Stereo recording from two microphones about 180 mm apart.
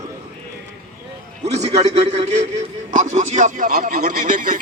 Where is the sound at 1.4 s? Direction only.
40° right (ahead or behind).